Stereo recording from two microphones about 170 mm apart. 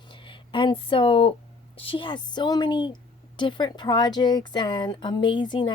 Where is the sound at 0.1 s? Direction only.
30° left (ahead or behind).